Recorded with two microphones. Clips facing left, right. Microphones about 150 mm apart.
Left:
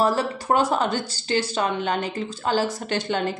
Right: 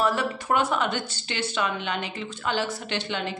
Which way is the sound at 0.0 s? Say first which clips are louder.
Left 3 dB; 35° left (ahead or behind).